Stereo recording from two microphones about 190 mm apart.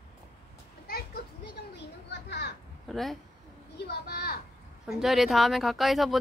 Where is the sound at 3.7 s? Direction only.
55° left (ahead or behind).